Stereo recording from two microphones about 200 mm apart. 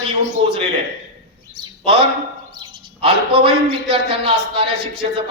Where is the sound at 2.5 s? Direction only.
25° right (ahead or behind).